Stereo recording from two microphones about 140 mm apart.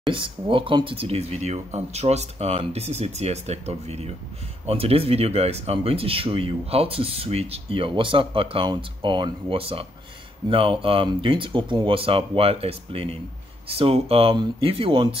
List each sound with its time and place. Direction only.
0.1 s speech: 40° right (ahead or behind)